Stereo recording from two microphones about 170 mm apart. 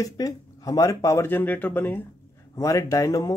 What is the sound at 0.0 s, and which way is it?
Speech, 20° left (ahead or behind).